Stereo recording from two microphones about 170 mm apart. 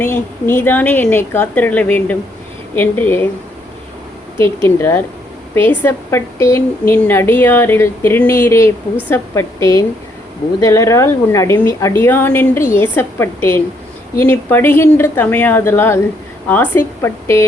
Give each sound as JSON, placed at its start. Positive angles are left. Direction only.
{"t": 0.0, "sound": "a woman's voice", "side_deg": 10}
{"t": 4.4, "sound": "a woman's voice", "side_deg": 15}